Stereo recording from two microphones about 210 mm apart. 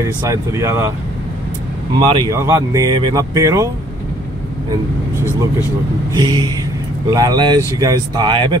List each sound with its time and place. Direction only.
0.2 s speech: 15° right (ahead or behind)
2.0 s speech: 20° right (ahead or behind)
6.1 s speech: 20° right (ahead or behind)